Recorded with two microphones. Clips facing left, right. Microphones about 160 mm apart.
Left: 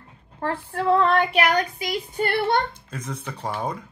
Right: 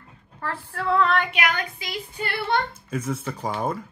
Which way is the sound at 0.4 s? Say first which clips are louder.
Left 5 dB; 30° left (ahead or behind).